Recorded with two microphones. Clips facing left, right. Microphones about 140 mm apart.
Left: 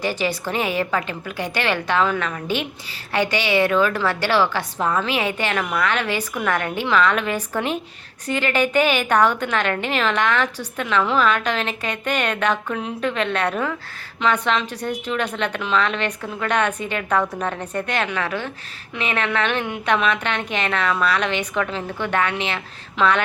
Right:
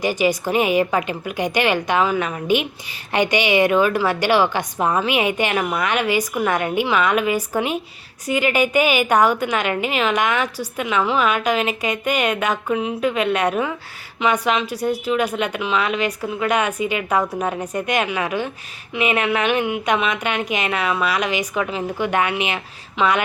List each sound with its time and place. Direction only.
0.0 s a woman's voice: 15° right (ahead or behind)